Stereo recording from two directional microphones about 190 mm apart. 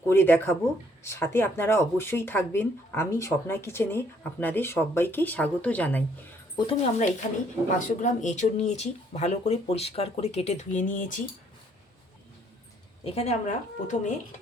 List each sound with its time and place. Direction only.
0.1 s speech: 10° left (ahead or behind)
6.7 s speech: 30° left (ahead or behind)
13.1 s speech: 35° left (ahead or behind)